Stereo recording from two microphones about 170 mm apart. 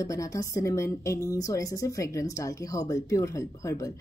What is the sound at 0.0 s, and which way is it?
A woman's voice, 20° left (ahead or behind).